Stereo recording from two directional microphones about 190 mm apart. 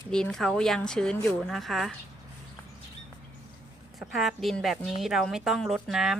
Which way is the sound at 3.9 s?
Centre (ahead or behind).